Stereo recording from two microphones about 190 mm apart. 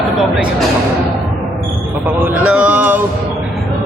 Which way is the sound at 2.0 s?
10° right (ahead or behind).